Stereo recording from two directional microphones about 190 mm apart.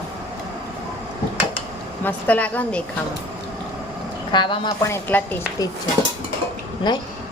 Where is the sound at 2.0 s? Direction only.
10° left (ahead or behind).